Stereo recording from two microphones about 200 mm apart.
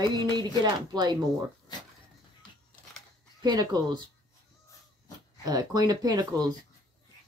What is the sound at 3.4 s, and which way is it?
Speech, 20° right (ahead or behind).